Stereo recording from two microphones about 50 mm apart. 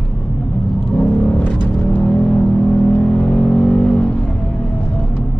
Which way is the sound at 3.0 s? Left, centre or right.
Centre.